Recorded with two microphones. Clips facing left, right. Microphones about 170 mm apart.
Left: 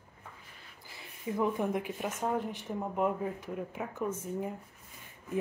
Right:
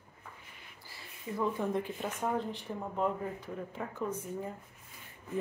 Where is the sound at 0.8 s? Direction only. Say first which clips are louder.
Left 4 dB; 20° left (ahead or behind).